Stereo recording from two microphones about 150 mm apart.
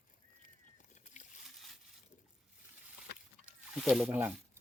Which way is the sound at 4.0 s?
10° right (ahead or behind).